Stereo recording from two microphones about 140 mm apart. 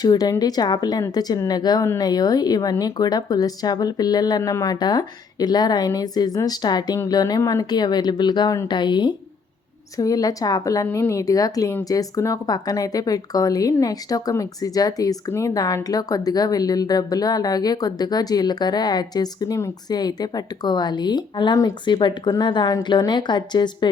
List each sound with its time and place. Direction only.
0.0 s speech: 25° left (ahead or behind)